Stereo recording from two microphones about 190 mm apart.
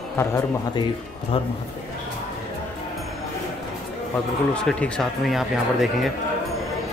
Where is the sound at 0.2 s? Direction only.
15° left (ahead or behind).